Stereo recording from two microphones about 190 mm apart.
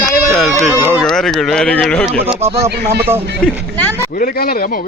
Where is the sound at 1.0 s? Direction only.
Centre (ahead or behind).